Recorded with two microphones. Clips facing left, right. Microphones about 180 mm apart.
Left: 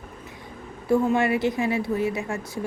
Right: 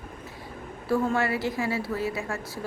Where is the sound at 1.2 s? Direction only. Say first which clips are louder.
Left 4 dB; 20° left (ahead or behind).